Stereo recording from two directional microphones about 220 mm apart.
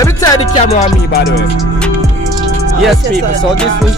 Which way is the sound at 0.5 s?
30° left (ahead or behind).